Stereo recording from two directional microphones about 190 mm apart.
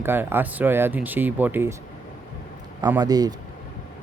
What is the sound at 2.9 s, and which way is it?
Speech, 20° right (ahead or behind).